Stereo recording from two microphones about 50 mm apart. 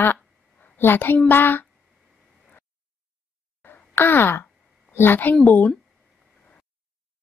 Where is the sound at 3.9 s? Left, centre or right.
Left.